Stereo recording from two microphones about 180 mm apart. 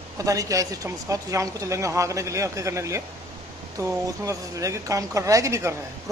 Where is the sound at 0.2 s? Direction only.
20° right (ahead or behind).